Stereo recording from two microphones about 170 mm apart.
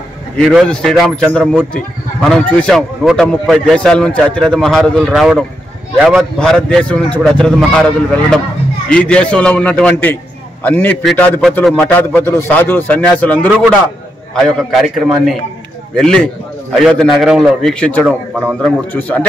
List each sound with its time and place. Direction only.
0.4 s a man's voice: 5° left (ahead or behind)
8.8 s a man's voice: 5° left (ahead or behind)
18.9 s a man's voice: 10° left (ahead or behind)